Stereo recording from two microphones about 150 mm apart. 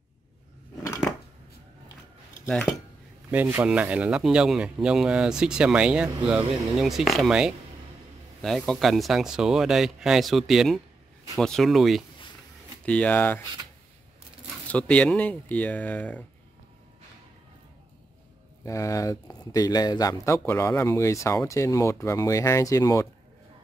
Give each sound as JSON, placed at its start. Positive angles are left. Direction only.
{"t": 2.4, "sound": "speech", "side_deg": 5}
{"t": 3.3, "sound": "speech", "side_deg": -15}
{"t": 14.7, "sound": "speech", "side_deg": 10}
{"t": 18.7, "sound": "speech", "side_deg": 20}